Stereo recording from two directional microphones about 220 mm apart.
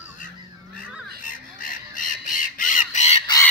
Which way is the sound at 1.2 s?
40° left (ahead or behind).